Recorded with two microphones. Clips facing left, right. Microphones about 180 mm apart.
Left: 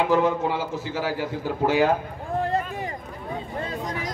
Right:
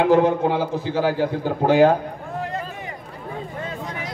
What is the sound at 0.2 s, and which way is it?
A man's voice, 55° right (ahead or behind).